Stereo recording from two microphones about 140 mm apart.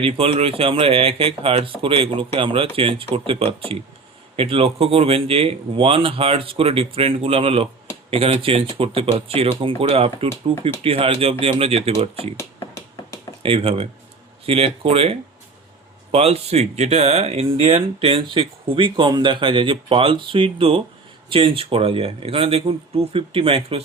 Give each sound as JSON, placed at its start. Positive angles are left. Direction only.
{"t": 0.0, "sound": "speech", "side_deg": -40}
{"t": 12.4, "sound": "a sound", "side_deg": 20}
{"t": 13.4, "sound": "speech", "side_deg": -40}